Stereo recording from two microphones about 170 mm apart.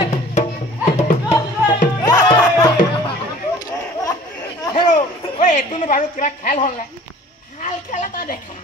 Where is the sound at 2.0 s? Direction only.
25° left (ahead or behind).